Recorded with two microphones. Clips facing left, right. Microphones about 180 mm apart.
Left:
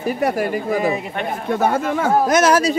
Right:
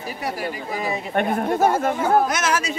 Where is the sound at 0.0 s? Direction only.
55° left (ahead or behind).